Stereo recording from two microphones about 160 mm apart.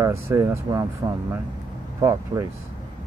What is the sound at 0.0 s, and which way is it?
Speech, 20° right (ahead or behind).